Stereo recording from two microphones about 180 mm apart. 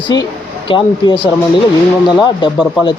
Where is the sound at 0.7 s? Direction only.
25° left (ahead or behind).